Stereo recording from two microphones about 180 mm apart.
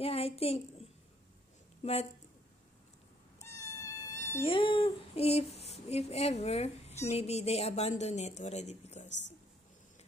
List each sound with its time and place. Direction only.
0.0 s a woman's voice: 35° left (ahead or behind)
3.3 s cat: 15° left (ahead or behind)
4.5 s a sound: 30° left (ahead or behind)
7.1 s speech: 35° left (ahead or behind)